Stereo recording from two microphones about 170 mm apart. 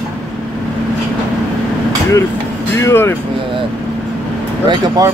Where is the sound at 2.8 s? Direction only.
15° left (ahead or behind).